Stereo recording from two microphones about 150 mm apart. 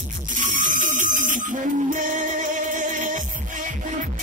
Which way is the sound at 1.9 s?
60° right (ahead or behind).